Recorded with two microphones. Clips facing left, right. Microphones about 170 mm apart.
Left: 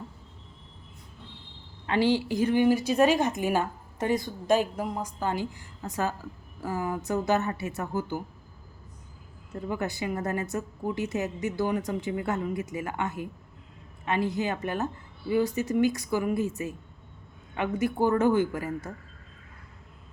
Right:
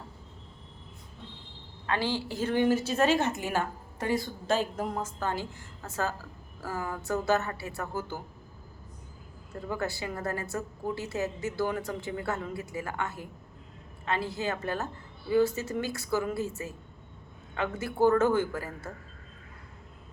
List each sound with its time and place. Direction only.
1.9 s a woman's voice: 15° left (ahead or behind)
9.6 s a woman's voice: 20° left (ahead or behind)